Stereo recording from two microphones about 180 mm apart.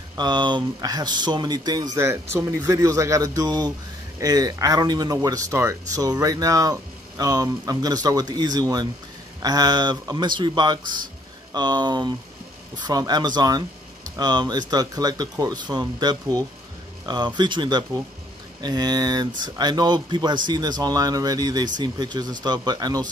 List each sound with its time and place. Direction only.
0.2 s speech: 25° right (ahead or behind)